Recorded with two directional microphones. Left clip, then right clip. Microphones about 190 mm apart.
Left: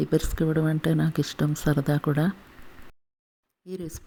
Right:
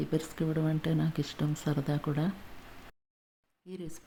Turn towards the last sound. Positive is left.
turn(degrees=25)  # may be behind; listen again after turning